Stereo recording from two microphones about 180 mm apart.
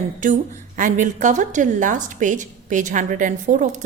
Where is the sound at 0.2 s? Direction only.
45° right (ahead or behind).